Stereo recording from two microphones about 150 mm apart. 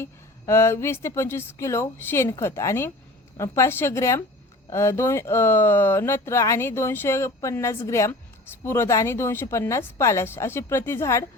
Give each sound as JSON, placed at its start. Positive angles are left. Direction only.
{"t": 0.0, "sound": "speech", "side_deg": 20}